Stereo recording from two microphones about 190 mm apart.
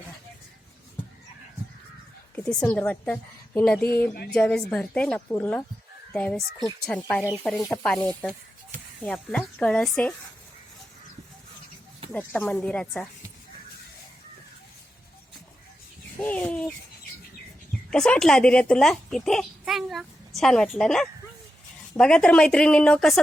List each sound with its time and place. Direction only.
2.3 s a woman's voice: 5° left (ahead or behind)
12.1 s speech: 10° left (ahead or behind)
16.1 s speech: 10° left (ahead or behind)
17.9 s a child's voice: 5° left (ahead or behind)